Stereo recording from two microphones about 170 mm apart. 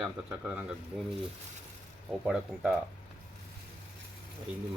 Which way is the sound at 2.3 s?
Centre (ahead or behind).